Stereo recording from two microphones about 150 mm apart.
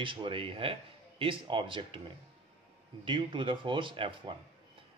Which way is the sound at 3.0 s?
35° right (ahead or behind).